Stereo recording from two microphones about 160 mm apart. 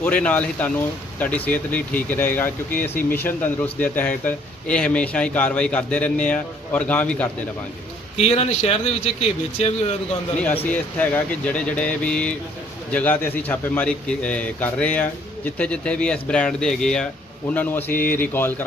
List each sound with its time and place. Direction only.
0.0 s a man's voice: 10° left (ahead or behind)
8.2 s speech: 40° left (ahead or behind)
10.4 s a man's voice: 10° left (ahead or behind)